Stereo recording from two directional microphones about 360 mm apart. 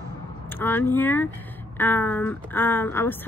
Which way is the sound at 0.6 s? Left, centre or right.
Centre.